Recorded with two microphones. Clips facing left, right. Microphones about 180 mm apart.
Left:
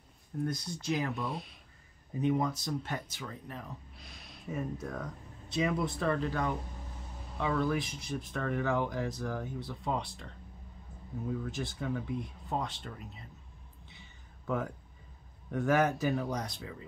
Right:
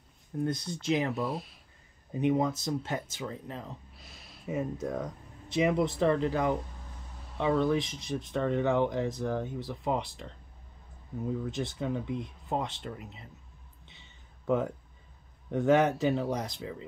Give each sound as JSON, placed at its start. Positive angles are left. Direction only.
{"t": 0.4, "sound": "speech", "side_deg": -25}
{"t": 1.2, "sound": "speech", "side_deg": 0}
{"t": 2.1, "sound": "speech", "side_deg": -25}
{"t": 11.5, "sound": "speech", "side_deg": -20}
{"t": 13.8, "sound": "a sound", "side_deg": -20}
{"t": 15.5, "sound": "speech", "side_deg": -20}